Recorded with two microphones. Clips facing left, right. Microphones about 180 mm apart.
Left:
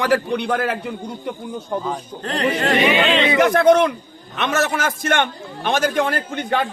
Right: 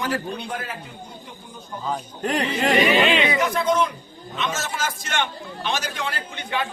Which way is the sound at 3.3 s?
70° left (ahead or behind).